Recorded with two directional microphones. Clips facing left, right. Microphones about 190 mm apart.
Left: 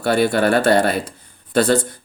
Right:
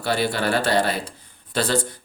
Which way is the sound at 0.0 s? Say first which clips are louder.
Left 6 dB; 50° left (ahead or behind).